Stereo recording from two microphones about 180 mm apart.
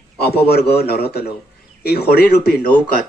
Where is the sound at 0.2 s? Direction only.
60° left (ahead or behind).